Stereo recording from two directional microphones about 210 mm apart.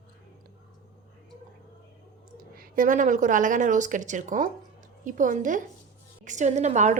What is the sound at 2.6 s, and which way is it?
A woman's voice, 40° right (ahead or behind).